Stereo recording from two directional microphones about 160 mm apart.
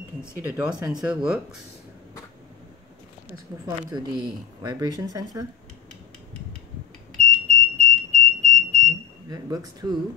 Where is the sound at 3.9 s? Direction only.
25° right (ahead or behind).